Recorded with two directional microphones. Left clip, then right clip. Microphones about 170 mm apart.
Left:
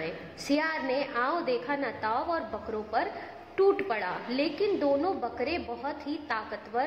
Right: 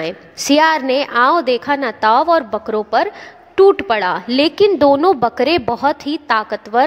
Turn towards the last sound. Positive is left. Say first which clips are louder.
# right 17 dB
turn(degrees=-50)  # may be behind; listen again after turning